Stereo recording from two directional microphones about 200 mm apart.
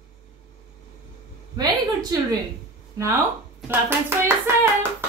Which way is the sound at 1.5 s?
20° right (ahead or behind).